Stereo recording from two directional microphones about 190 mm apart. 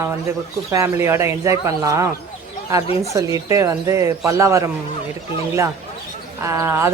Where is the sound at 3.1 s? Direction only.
15° right (ahead or behind).